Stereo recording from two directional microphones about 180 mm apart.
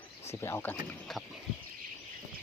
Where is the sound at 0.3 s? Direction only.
15° left (ahead or behind).